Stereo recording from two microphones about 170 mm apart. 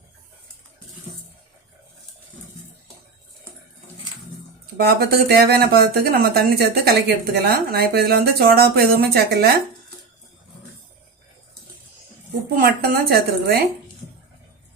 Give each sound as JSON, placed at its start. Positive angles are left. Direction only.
{"t": 4.8, "sound": "speech", "side_deg": -65}
{"t": 12.5, "sound": "a woman's voice", "side_deg": -65}